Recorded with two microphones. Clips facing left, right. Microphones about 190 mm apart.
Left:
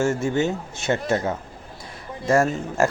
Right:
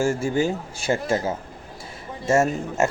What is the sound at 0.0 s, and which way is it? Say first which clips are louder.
Speech: even; 30° right (ahead or behind).